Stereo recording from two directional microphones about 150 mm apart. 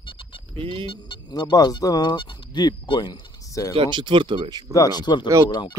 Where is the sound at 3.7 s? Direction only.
35° right (ahead or behind).